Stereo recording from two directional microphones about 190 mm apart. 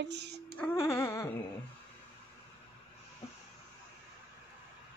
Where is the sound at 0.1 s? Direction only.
65° right (ahead or behind).